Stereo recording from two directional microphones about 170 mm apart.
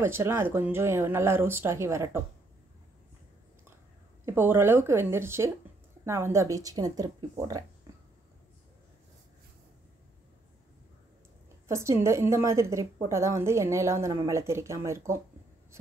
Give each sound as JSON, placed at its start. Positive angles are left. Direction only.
{"t": 0.0, "sound": "a woman's voice", "side_deg": -15}
{"t": 4.3, "sound": "a woman's voice", "side_deg": -15}
{"t": 11.6, "sound": "a woman's voice", "side_deg": -15}